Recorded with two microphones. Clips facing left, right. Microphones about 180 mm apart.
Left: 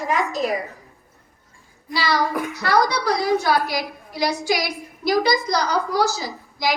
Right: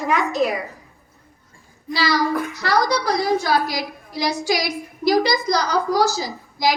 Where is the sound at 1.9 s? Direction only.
55° left (ahead or behind).